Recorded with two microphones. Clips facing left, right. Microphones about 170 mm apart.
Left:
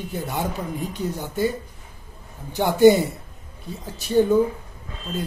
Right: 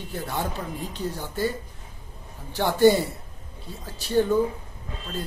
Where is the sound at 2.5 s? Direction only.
15° left (ahead or behind).